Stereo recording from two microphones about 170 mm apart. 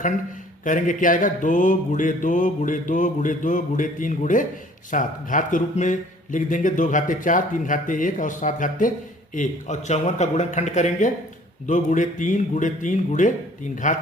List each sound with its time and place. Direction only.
0.6 s speech: 50° left (ahead or behind)